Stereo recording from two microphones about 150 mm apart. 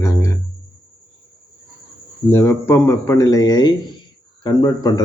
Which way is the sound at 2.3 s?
15° left (ahead or behind).